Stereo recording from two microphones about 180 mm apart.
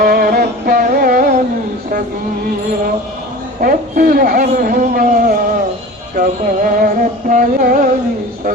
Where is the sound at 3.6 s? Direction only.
50° right (ahead or behind).